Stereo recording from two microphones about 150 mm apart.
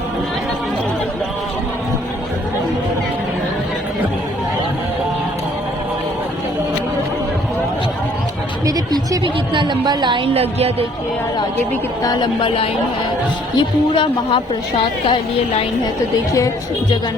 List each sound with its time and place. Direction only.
8.6 s a sound: 25° right (ahead or behind)
10.3 s a woman's voice: 40° right (ahead or behind)
12.0 s a woman's voice: 30° left (ahead or behind)